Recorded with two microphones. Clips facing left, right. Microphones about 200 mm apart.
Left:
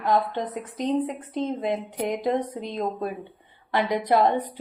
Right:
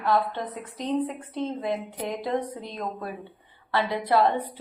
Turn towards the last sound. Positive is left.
turn(degrees=20)  # may be behind; listen again after turning